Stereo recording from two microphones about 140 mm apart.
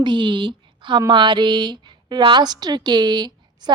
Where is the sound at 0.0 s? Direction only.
35° right (ahead or behind).